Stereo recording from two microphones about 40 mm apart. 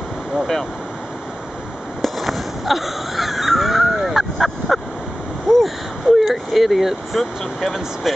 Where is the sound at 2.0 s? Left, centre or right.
Centre.